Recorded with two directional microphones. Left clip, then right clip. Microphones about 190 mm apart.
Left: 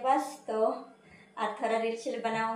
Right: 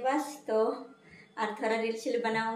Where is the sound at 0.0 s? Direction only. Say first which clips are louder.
Left 3 dB; 10° right (ahead or behind).